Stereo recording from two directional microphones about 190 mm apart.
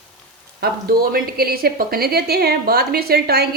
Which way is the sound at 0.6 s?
50° right (ahead or behind).